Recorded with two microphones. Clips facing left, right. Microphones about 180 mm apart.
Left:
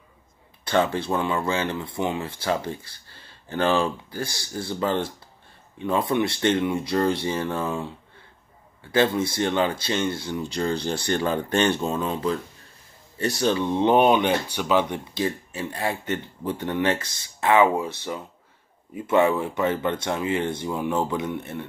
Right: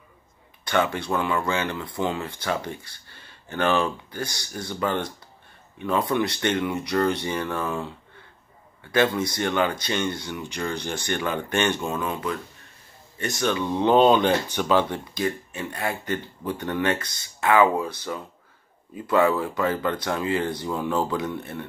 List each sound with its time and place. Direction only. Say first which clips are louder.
0.7 s speech: left 2 dB; 30° left (ahead or behind)
8.9 s speech: left 1 dB; 25° left (ahead or behind)
15.1 s speech: left 1 dB; 30° left (ahead or behind)